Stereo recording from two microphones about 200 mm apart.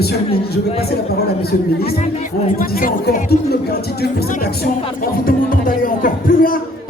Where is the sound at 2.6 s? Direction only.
45° left (ahead or behind).